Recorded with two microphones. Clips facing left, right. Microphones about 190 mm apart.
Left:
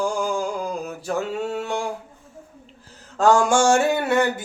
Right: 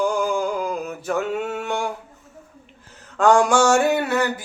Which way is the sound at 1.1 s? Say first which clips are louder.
Right 1 dB; 35° left (ahead or behind).